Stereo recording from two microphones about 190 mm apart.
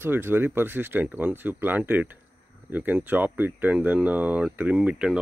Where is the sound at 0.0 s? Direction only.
10° right (ahead or behind).